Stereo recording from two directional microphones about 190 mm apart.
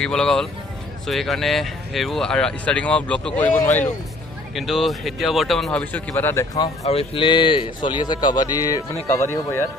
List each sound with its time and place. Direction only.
0.0 s speech: 5° left (ahead or behind)
4.6 s speech: centre (ahead or behind); by 6.9 s 20° left (ahead or behind)
6.9 s a man's voice: 30° left (ahead or behind); by 9.7 s 15° left (ahead or behind)